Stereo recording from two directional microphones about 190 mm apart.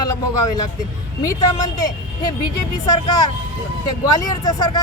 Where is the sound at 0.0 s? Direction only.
20° left (ahead or behind).